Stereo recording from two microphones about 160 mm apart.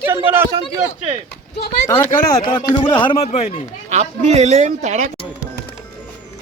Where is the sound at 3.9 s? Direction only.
45° right (ahead or behind).